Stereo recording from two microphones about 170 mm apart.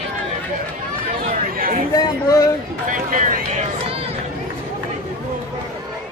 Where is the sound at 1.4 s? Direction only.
55° right (ahead or behind).